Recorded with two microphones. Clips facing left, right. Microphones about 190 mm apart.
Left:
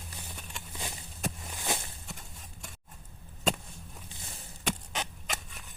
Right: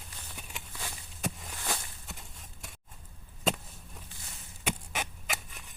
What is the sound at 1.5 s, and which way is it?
Walk, 20° left (ahead or behind).